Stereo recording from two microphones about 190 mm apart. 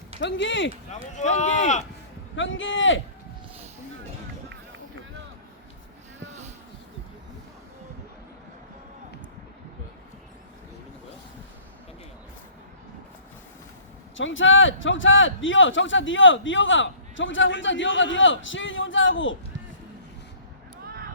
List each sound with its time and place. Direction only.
0.2 s speech: 70° left (ahead or behind)
0.9 s speech: 40° left (ahead or behind)
2.3 s a man's voice: 85° left
6.1 s a sound: 35° right (ahead or behind)
14.2 s a man's voice: 90° left